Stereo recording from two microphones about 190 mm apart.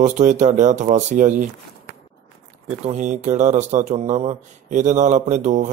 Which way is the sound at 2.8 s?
40° right (ahead or behind).